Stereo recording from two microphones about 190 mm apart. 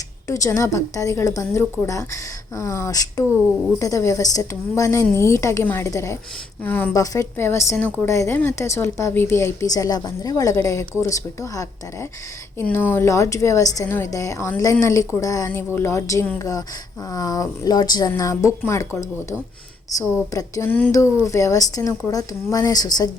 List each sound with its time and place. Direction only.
0.3 s a woman's voice: 15° left (ahead or behind)